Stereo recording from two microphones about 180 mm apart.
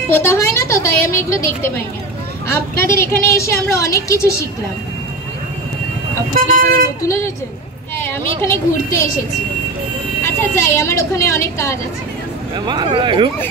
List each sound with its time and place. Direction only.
0.1 s a woman's voice: 15° left (ahead or behind)
6.5 s speech: 55° right (ahead or behind)
8.0 s a woman's voice: 15° left (ahead or behind)
10.2 s a woman's voice: 15° left (ahead or behind)
12.5 s speech: 25° right (ahead or behind)